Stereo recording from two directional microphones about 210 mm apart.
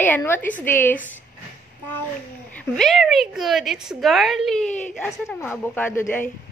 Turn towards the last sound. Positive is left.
turn(degrees=10)  # may be behind; listen again after turning